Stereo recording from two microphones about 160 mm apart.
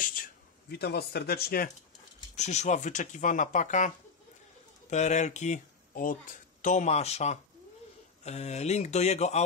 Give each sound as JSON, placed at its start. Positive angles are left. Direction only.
{"t": 0.0, "sound": "speech", "side_deg": 55}
{"t": 2.3, "sound": "speech", "side_deg": 45}